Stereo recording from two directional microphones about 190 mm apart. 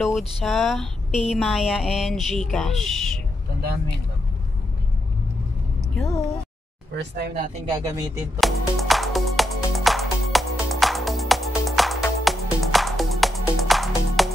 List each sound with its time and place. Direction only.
0.4 s speech: centre (ahead or behind)
6.0 s a sound: 15° left (ahead or behind)
7.0 s speech: 60° right (ahead or behind)
7.7 s speech: 15° right (ahead or behind)
8.4 s music: centre (ahead or behind)